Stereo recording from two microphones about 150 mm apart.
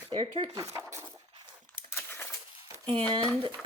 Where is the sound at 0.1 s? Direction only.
35° right (ahead or behind).